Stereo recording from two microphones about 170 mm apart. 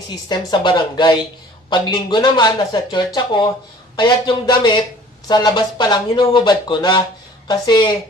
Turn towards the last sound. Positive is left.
turn(degrees=25)  # may be behind; listen again after turning